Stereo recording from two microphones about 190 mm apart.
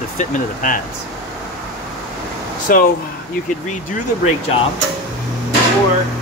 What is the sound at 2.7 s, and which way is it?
Speech, 45° left (ahead or behind).